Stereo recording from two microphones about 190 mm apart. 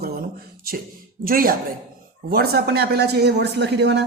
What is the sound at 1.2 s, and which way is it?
Speech, 50° right (ahead or behind).